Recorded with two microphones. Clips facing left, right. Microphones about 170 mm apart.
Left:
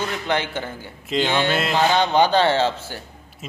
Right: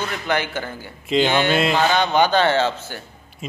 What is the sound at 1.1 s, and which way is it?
Speech, centre (ahead or behind).